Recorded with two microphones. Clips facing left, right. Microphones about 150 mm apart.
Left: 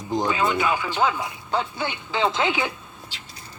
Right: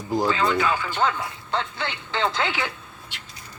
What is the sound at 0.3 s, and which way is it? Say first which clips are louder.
Speech: even; 15° left (ahead or behind).